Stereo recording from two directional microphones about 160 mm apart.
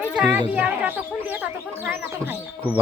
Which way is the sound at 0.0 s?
5° right (ahead or behind).